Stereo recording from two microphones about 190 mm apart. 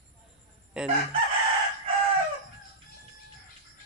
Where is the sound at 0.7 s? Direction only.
5° right (ahead or behind).